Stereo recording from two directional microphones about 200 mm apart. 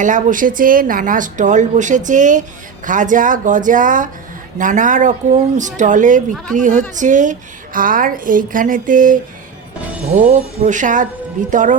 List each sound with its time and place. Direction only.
0.0 s a woman's voice: 40° right (ahead or behind)
10.2 s a woman's voice: 45° right (ahead or behind)